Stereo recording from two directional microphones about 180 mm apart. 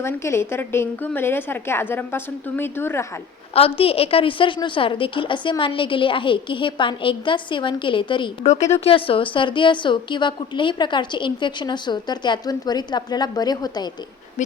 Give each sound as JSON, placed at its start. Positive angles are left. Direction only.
{"t": 0.0, "sound": "a woman's voice", "side_deg": 15}
{"t": 3.5, "sound": "a woman's voice", "side_deg": 30}
{"t": 8.4, "sound": "a woman's voice", "side_deg": 40}